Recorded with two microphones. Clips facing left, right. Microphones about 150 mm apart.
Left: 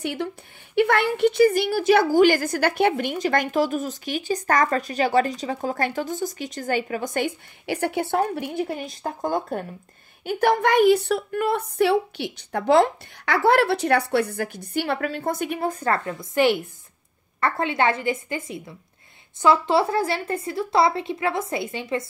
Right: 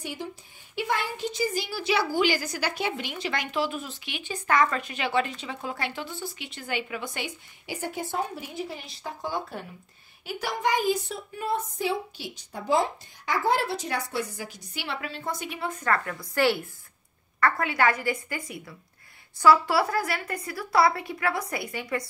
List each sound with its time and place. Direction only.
0.0 s a woman's voice: 65° left (ahead or behind)
15.7 s a woman's voice: 30° left (ahead or behind)